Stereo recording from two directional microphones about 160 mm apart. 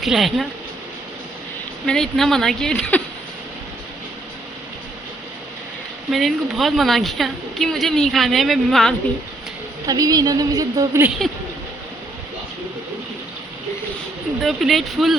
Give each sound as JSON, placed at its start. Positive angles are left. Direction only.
{"t": 0.0, "sound": "speech", "side_deg": 0}
{"t": 1.9, "sound": "speech", "side_deg": 0}
{"t": 6.1, "sound": "speech", "side_deg": 0}
{"t": 9.8, "sound": "a woman's voice", "side_deg": -25}
{"t": 11.2, "sound": "speech", "side_deg": 0}
{"t": 14.4, "sound": "speech", "side_deg": 0}